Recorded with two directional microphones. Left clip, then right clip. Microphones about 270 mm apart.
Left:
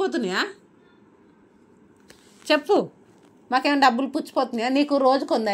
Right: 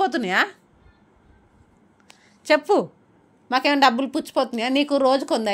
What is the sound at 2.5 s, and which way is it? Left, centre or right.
Speech, right.